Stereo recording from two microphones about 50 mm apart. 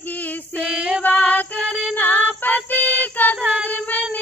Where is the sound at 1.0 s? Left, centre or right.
Left.